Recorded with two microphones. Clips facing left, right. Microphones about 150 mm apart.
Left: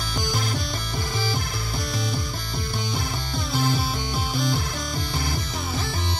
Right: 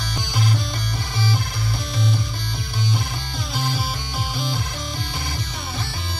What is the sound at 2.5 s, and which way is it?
Music, 50° left (ahead or behind).